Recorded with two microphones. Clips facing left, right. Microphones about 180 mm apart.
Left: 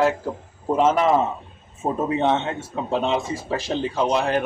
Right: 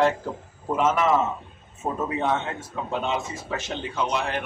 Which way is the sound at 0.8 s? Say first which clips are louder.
Left 3 dB; 30° left (ahead or behind).